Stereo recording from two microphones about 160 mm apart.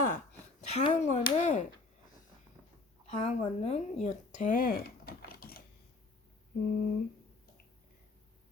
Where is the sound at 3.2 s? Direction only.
40° left (ahead or behind).